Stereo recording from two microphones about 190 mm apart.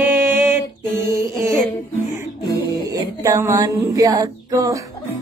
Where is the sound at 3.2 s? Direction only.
15° right (ahead or behind).